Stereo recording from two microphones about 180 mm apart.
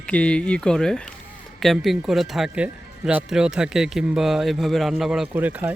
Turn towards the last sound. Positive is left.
turn(degrees=-10)  # may be behind; listen again after turning